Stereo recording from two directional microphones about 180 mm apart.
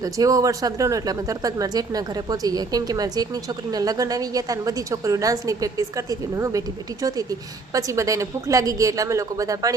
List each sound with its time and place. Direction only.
0.0 s speech: 20° right (ahead or behind)